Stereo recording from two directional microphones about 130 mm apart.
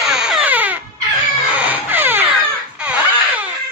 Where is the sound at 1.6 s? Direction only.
15° right (ahead or behind).